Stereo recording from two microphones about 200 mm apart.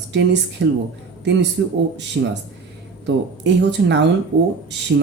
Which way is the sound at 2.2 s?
55° right (ahead or behind).